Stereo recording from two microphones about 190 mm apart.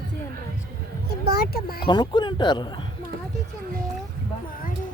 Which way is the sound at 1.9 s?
25° left (ahead or behind).